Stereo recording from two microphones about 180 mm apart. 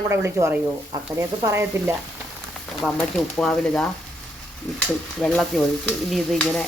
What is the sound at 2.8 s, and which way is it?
Stir, centre (ahead or behind).